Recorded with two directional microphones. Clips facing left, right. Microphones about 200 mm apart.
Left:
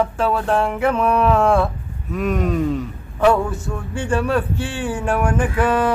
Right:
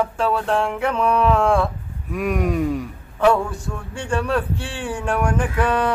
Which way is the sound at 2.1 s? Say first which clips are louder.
Left 1 dB; 10° right (ahead or behind).